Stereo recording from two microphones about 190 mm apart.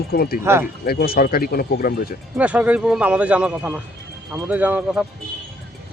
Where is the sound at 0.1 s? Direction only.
55° left (ahead or behind).